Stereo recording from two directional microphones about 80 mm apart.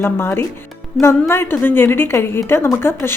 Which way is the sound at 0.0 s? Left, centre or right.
Left.